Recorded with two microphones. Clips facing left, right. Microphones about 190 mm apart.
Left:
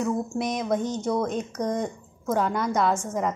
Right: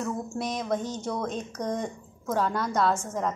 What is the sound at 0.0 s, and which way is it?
A woman's voice, 15° left (ahead or behind).